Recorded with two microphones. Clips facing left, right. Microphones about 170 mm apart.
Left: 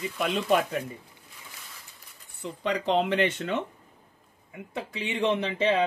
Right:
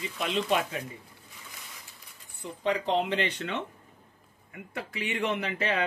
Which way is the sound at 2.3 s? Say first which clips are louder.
Even; 70° left (ahead or behind).